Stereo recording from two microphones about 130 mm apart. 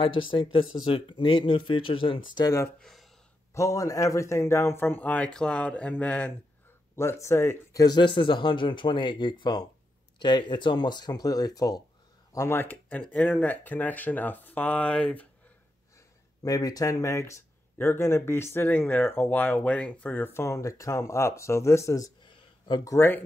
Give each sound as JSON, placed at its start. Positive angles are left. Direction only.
{"t": 0.0, "sound": "speech", "side_deg": 40}
{"t": 2.8, "sound": "speech", "side_deg": 0}
{"t": 3.5, "sound": "a man's voice", "side_deg": 25}
{"t": 16.4, "sound": "speech", "side_deg": 30}
{"t": 22.2, "sound": "a sound", "side_deg": 35}
{"t": 22.9, "sound": "a man's voice", "side_deg": 15}